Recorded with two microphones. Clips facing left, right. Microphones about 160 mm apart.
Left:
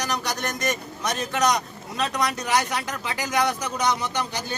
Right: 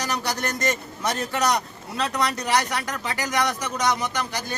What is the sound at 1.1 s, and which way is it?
Speech, 15° left (ahead or behind).